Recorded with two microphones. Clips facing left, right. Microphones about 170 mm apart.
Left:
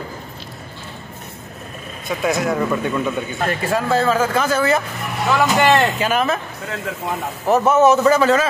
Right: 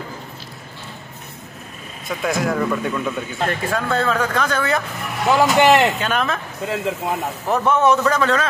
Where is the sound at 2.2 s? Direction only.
Centre (ahead or behind).